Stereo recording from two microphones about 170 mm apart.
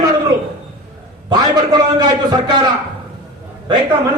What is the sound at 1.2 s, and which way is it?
A man's voice, 25° right (ahead or behind).